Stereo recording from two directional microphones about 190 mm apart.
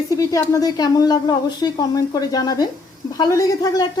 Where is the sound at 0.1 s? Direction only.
20° left (ahead or behind).